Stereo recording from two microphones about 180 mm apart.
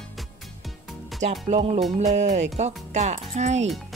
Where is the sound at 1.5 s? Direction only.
30° right (ahead or behind).